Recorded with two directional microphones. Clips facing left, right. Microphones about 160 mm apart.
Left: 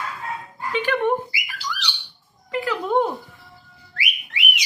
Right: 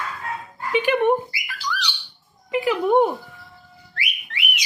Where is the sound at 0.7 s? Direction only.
15° right (ahead or behind).